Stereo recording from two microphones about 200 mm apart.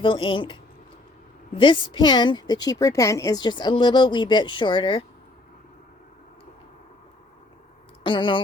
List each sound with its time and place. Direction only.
0.0 s a woman's voice: 25° left (ahead or behind)
1.5 s a woman's voice: 25° left (ahead or behind)
8.0 s speech: 25° left (ahead or behind)